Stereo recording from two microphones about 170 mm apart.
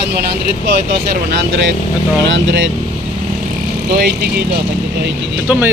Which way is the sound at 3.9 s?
70° right (ahead or behind).